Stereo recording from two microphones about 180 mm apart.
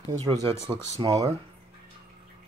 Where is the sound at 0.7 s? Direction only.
25° right (ahead or behind).